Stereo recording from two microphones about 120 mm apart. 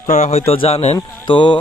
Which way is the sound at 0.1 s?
70° left (ahead or behind).